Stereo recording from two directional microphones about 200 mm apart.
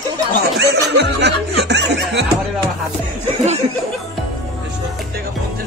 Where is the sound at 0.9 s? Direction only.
55° right (ahead or behind).